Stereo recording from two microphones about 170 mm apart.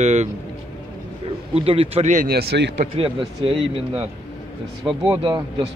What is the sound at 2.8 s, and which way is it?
A man's voice, 35° right (ahead or behind).